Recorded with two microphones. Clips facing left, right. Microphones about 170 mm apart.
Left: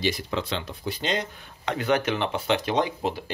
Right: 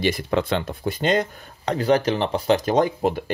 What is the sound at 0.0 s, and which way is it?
Speech, 55° right (ahead or behind).